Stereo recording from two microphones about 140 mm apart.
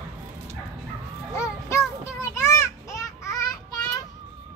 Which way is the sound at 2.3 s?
20° left (ahead or behind).